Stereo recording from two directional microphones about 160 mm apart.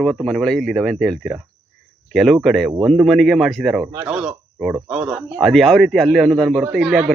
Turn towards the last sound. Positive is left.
turn(degrees=-5)  # may be behind; listen again after turning